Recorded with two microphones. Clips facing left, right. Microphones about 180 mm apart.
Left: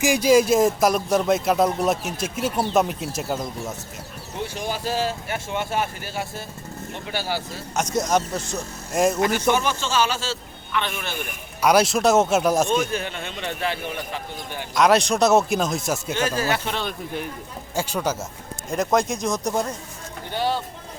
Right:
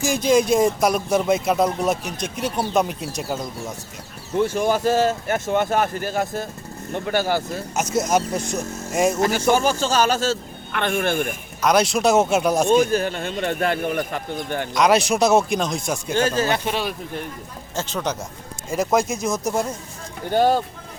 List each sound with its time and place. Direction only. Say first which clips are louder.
0.0 s speech: left 1 dB; 10° left (ahead or behind)
4.4 s speech: right 9 dB; 50° right (ahead or behind)
7.8 s speech: right 1 dB; 5° right (ahead or behind)
8.9 s speech: even; centre (ahead or behind)
9.4 s speech: right 3 dB; 35° right (ahead or behind); by 11.3 s 50° right (ahead or behind)
11.6 s speech: even; 5° left (ahead or behind)
12.9 s speech: right 6 dB; 40° right (ahead or behind)
14.8 s speech: even; centre (ahead or behind)
16.1 s speech: right 5 dB; 25° right (ahead or behind)
16.6 s speech: right 3 dB; 10° right (ahead or behind)
17.7 s speech: left 1 dB; 10° left (ahead or behind)
18.7 s speech: right 1 dB; centre (ahead or behind)
20.3 s speech: right 7 dB; 45° right (ahead or behind)